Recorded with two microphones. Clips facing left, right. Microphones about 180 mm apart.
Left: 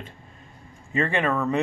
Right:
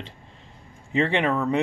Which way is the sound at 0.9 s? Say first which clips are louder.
Right 2 dB; 15° right (ahead or behind).